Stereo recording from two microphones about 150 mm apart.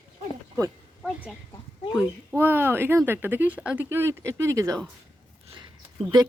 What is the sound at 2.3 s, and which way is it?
A woman's voice, 15° right (ahead or behind).